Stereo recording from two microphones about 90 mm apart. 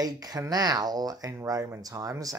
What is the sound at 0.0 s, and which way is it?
Speech, 45° right (ahead or behind).